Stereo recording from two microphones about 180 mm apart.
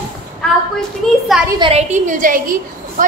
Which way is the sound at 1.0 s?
5° left (ahead or behind).